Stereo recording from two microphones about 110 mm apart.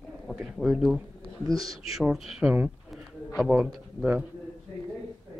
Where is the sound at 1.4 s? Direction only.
35° right (ahead or behind).